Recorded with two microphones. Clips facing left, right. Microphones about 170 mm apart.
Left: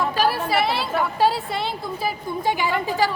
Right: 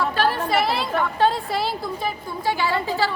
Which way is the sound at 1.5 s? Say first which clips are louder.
Right 2 dB; centre (ahead or behind).